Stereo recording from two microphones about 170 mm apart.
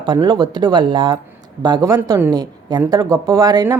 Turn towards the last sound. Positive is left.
turn(degrees=-20)  # may be behind; listen again after turning